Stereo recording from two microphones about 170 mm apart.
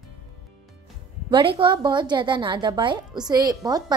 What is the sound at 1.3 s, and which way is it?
A woman's voice, 30° right (ahead or behind).